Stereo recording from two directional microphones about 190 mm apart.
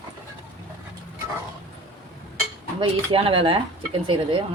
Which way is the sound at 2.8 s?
30° right (ahead or behind).